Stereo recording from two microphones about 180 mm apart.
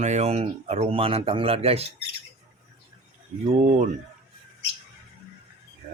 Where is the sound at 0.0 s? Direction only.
40° right (ahead or behind).